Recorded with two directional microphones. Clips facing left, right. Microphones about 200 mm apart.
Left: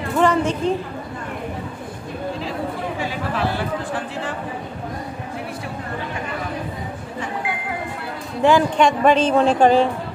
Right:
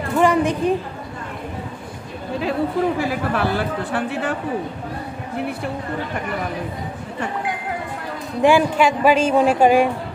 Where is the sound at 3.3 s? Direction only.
60° right (ahead or behind).